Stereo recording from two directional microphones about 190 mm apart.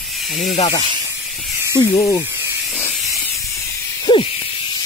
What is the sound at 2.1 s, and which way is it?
Hiss, 10° right (ahead or behind).